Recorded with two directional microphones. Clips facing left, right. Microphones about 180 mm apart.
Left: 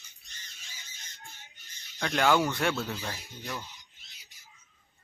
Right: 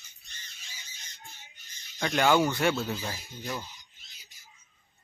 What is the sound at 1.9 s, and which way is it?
Speech, 5° right (ahead or behind).